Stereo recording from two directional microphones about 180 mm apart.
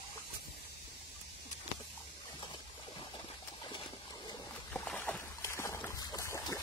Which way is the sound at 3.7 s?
25° left (ahead or behind).